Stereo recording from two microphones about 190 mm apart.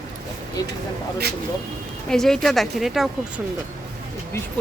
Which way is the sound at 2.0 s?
Centre (ahead or behind).